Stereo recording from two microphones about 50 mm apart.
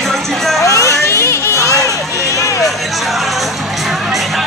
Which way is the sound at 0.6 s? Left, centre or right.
Left.